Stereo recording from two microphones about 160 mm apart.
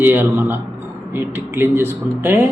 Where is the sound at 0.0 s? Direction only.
15° right (ahead or behind).